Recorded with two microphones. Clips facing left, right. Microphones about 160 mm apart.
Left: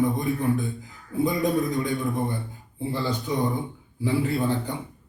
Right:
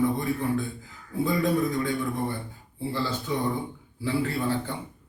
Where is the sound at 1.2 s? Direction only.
20° left (ahead or behind).